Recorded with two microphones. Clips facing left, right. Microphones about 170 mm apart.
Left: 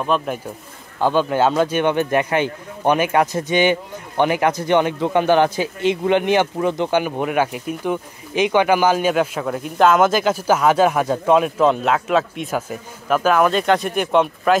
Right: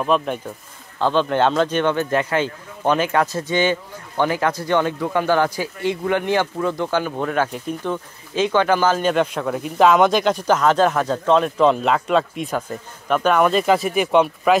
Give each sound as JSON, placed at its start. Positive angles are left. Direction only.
{"t": 0.0, "sound": "speech", "side_deg": 0}
{"t": 0.9, "sound": "speech", "side_deg": 10}